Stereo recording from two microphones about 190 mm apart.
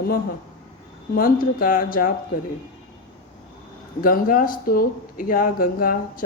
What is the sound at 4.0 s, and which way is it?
Speech, 50° left (ahead or behind).